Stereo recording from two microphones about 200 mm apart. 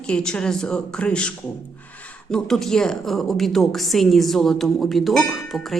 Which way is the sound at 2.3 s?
Centre (ahead or behind).